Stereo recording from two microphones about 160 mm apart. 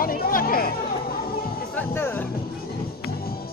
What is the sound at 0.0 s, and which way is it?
Chatter, 65° left (ahead or behind).